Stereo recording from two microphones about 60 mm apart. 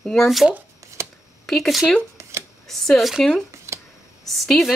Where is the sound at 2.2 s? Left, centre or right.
Right.